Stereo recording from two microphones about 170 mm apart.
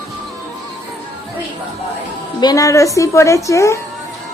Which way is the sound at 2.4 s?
20° left (ahead or behind).